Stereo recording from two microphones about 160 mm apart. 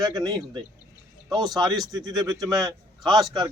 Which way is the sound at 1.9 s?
25° right (ahead or behind).